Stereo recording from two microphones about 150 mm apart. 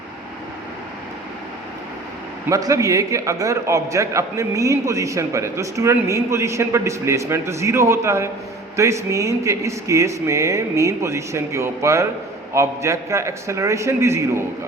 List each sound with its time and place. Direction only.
2.5 s a man's voice: 20° right (ahead or behind)